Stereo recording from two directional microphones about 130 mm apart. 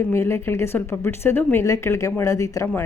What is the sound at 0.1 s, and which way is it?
A woman's voice, 20° left (ahead or behind).